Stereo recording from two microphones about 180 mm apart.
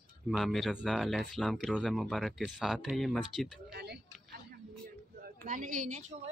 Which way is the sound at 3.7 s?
65° right (ahead or behind).